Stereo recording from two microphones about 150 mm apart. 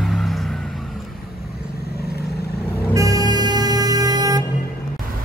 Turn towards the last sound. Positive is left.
turn(degrees=-25)  # may be behind; listen again after turning